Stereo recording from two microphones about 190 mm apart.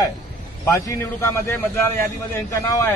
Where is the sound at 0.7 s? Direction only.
15° left (ahead or behind).